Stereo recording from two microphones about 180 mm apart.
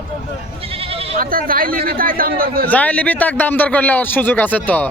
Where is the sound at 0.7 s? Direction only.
30° right (ahead or behind).